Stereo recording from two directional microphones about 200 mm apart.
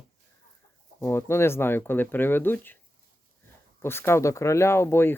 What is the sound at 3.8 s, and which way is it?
Speech, 10° left (ahead or behind).